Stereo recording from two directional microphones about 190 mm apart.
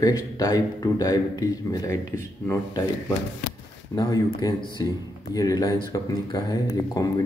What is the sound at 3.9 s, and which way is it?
A man's voice, 20° left (ahead or behind).